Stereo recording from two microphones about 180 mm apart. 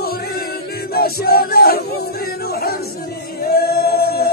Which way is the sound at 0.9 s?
60° left (ahead or behind).